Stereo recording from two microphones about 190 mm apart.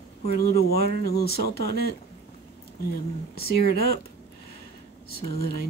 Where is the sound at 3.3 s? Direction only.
55° left (ahead or behind).